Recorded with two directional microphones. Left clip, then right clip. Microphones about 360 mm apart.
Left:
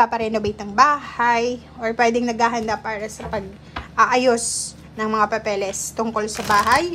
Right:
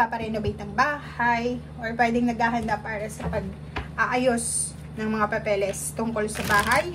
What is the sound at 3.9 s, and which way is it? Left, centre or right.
A woman's voice, centre.